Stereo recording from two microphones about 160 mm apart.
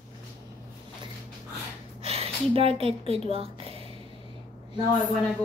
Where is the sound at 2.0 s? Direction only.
40° right (ahead or behind).